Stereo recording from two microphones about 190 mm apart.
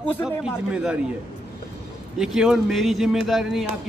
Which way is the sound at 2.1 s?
5° right (ahead or behind).